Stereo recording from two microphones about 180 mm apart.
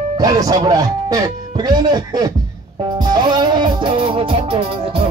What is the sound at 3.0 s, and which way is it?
Music, 25° right (ahead or behind).